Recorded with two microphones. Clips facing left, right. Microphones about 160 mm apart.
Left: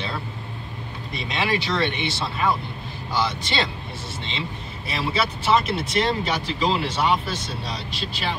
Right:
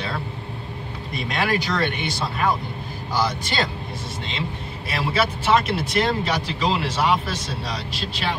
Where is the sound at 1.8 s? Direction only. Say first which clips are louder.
Even; 45° right (ahead or behind).